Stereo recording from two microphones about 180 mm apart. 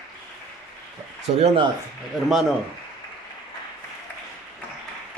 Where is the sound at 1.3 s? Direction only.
30° right (ahead or behind).